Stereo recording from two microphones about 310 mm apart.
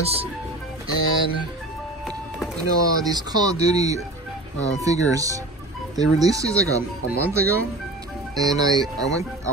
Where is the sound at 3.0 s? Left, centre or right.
Centre.